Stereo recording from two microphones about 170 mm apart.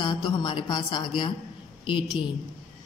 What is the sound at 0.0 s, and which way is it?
A woman's voice, 25° left (ahead or behind).